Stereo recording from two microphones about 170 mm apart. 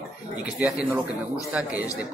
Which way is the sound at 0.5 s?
20° left (ahead or behind).